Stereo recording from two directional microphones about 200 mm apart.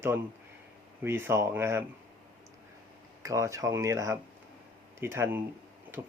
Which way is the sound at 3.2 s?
15° right (ahead or behind).